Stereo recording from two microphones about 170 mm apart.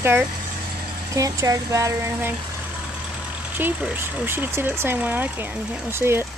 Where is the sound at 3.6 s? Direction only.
10° right (ahead or behind).